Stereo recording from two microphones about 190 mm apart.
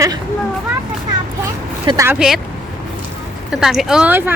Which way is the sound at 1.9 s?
15° right (ahead or behind).